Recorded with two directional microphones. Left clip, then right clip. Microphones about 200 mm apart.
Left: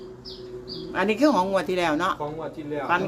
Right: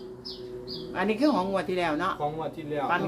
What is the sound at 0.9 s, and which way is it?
Speech, 35° left (ahead or behind).